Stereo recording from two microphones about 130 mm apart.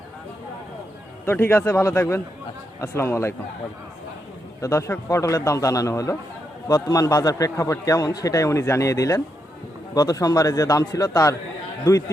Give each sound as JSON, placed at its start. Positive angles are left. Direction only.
{"t": 1.2, "sound": "a man's voice", "side_deg": 15}
{"t": 4.6, "sound": "a man's voice", "side_deg": 20}